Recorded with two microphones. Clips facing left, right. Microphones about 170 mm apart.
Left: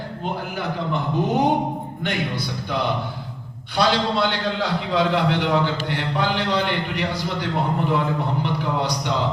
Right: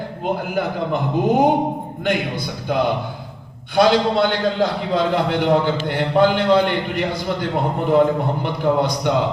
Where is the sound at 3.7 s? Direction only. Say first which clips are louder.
Right 5 dB; 50° right (ahead or behind).